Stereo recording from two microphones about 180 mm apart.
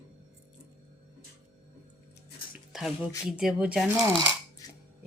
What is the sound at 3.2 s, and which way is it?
Speech, 5° right (ahead or behind).